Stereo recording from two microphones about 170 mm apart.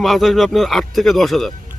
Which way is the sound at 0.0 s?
Centre (ahead or behind).